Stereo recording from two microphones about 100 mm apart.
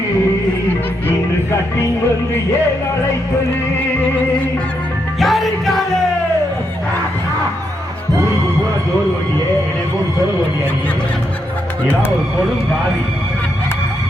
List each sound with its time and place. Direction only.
5.2 s music: centre (ahead or behind)